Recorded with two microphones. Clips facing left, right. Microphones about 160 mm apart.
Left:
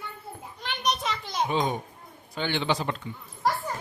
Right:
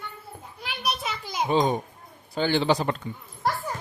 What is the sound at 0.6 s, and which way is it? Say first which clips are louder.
Children playing: left 1 dB; 5° right (ahead or behind).